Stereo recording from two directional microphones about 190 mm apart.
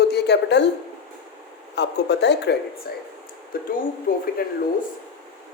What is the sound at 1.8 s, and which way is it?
A man's voice, 65° left (ahead or behind).